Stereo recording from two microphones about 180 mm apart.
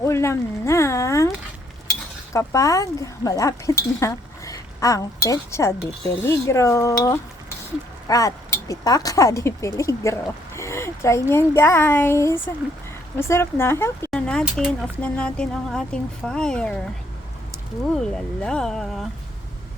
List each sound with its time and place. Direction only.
0.0 s speech: 15° left (ahead or behind)
2.3 s speech: 15° left (ahead or behind)
17.9 s speech: 5° left (ahead or behind)